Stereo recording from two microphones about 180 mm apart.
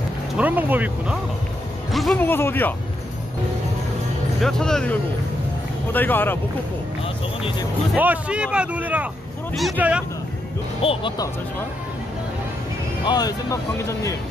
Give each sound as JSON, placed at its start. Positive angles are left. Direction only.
{"t": 0.4, "sound": "speech", "side_deg": -10}
{"t": 2.1, "sound": "speech", "side_deg": 10}
{"t": 4.4, "sound": "speech", "side_deg": 5}
{"t": 5.9, "sound": "speech", "side_deg": 10}
{"t": 7.9, "sound": "speech", "side_deg": -5}
{"t": 10.8, "sound": "speech", "side_deg": 30}
{"t": 13.0, "sound": "speech", "side_deg": 20}